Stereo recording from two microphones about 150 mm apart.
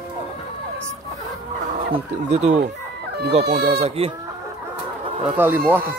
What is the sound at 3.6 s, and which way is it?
Speech, 40° right (ahead or behind).